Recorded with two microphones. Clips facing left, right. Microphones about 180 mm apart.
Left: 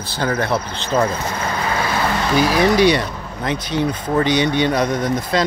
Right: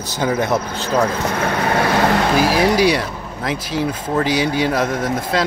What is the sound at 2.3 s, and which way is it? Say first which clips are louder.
Speech: even; 5° right (ahead or behind).